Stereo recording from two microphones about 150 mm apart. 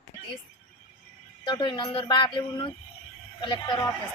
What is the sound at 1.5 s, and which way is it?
Speech, 30° left (ahead or behind).